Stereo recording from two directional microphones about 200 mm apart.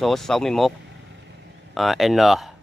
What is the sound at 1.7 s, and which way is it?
Speech, centre (ahead or behind).